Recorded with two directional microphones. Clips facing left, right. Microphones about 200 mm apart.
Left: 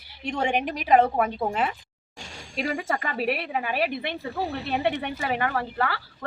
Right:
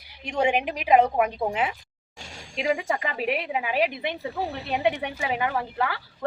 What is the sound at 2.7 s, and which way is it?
A woman's voice, 15° right (ahead or behind).